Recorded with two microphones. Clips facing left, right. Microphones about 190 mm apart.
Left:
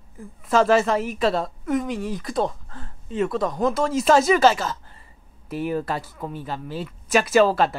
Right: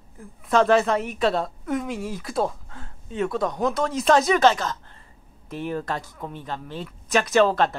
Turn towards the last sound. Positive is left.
turn(degrees=5)  # may be behind; listen again after turning